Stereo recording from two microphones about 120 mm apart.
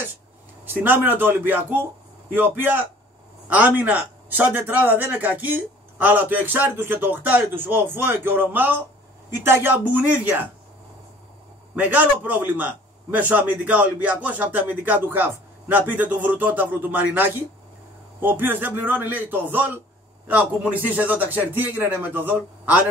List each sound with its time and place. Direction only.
0.8 s a man's voice: 15° right (ahead or behind)
11.7 s a man's voice: 15° right (ahead or behind)